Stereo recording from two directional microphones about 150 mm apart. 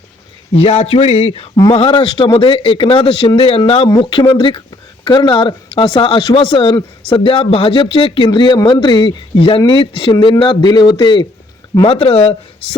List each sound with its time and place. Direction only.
0.5 s speech: 40° left (ahead or behind)
1.5 s speech: 30° left (ahead or behind)
11.9 s speech: 40° left (ahead or behind)